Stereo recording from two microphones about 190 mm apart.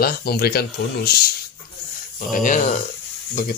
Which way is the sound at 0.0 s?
55° left (ahead or behind).